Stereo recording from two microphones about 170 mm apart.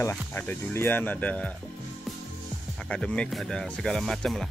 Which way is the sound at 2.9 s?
5° left (ahead or behind).